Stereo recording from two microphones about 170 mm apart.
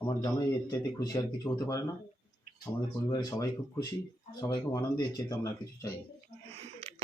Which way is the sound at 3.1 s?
20° left (ahead or behind).